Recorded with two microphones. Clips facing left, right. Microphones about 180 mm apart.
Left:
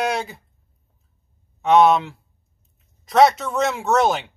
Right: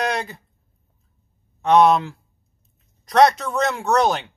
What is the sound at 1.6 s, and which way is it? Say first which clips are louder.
Speech: even; centre (ahead or behind).